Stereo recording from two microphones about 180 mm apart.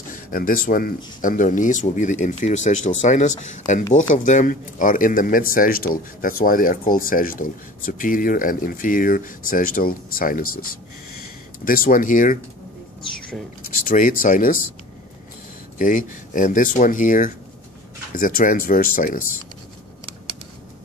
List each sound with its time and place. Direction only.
0.1 s speech: 55° left (ahead or behind)
13.8 s speech: 50° left (ahead or behind)
15.8 s speech: 45° left (ahead or behind)